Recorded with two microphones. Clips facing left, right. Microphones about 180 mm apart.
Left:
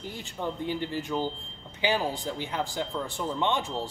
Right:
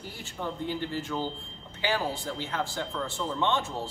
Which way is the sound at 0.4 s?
15° left (ahead or behind).